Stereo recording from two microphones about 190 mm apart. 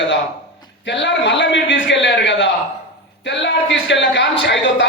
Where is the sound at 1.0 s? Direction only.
70° left (ahead or behind).